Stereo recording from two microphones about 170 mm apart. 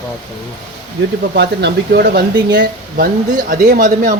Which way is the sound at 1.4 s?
75° right (ahead or behind).